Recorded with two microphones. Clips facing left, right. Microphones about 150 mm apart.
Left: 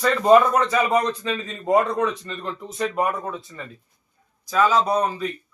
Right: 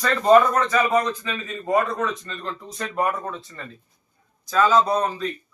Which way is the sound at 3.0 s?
5° left (ahead or behind).